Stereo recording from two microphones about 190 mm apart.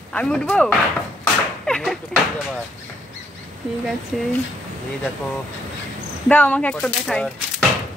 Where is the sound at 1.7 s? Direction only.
Centre (ahead or behind).